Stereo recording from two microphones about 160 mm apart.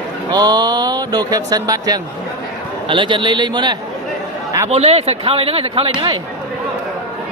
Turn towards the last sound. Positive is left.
turn(degrees=-35)  # may be behind; listen again after turning